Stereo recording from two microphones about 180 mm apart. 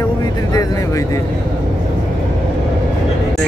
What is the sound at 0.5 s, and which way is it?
Speech, 20° left (ahead or behind).